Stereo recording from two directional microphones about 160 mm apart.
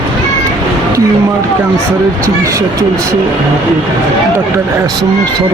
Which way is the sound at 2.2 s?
20° right (ahead or behind).